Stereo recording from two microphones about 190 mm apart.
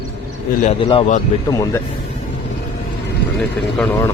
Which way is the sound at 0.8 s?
25° left (ahead or behind).